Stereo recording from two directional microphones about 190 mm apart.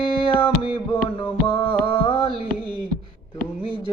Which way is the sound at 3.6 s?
25° right (ahead or behind).